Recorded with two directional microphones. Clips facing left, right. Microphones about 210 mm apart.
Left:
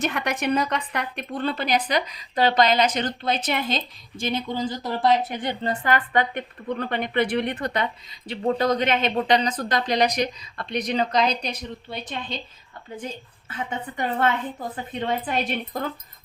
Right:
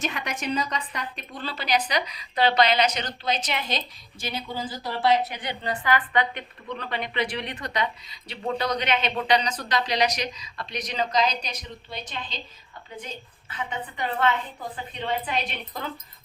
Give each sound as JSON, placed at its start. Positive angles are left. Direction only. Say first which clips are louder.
{"t": 0.0, "sound": "a woman's voice", "louder": "left 5 dB", "side_deg": 60}
{"t": 4.5, "sound": "speech", "louder": "left 6 dB", "side_deg": -5}
{"t": 4.8, "sound": "a woman's voice", "louder": "even", "side_deg": 45}
{"t": 13.5, "sound": "a woman's voice", "louder": "left 2 dB", "side_deg": 45}